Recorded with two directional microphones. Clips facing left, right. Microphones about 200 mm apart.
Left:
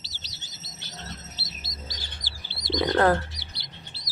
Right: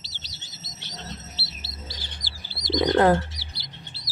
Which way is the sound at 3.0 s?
15° right (ahead or behind).